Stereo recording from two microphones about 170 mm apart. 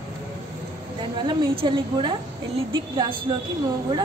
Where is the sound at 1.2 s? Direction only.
30° right (ahead or behind).